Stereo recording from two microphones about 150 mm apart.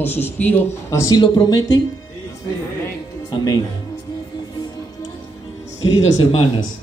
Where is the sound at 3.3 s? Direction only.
30° left (ahead or behind).